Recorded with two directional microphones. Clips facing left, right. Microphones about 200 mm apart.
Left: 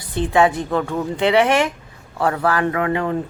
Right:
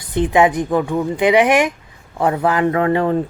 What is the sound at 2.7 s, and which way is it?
Speech, 30° right (ahead or behind).